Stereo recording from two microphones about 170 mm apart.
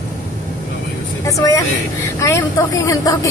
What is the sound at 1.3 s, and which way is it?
A woman's voice, 20° left (ahead or behind).